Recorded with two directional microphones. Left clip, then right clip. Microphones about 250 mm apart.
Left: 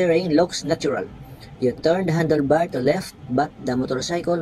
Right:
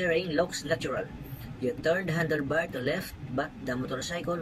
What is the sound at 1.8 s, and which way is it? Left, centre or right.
Speech, centre.